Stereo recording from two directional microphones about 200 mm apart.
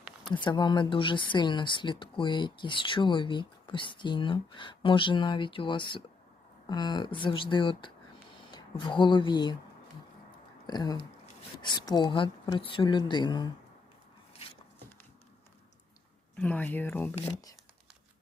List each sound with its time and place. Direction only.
0.0 s a sound: centre (ahead or behind)
0.4 s speech: 20° left (ahead or behind)
10.7 s speech: 20° left (ahead or behind)
16.4 s speech: 5° left (ahead or behind)